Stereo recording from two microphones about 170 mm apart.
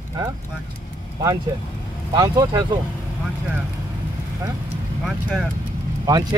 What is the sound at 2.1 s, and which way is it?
Speech, 25° right (ahead or behind).